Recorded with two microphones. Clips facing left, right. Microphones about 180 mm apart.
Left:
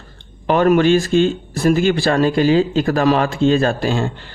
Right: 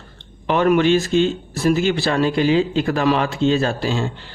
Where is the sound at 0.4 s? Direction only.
45° left (ahead or behind).